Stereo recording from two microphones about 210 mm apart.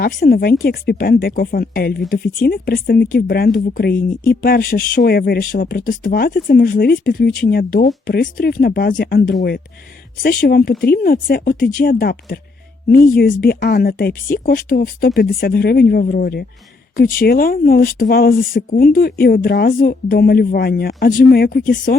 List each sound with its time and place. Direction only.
0.0 s speech: 45° left (ahead or behind)